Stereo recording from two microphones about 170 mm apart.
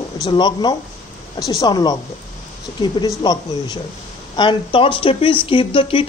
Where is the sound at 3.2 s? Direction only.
25° left (ahead or behind).